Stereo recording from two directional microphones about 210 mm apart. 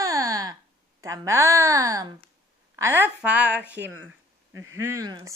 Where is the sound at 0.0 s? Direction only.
15° right (ahead or behind).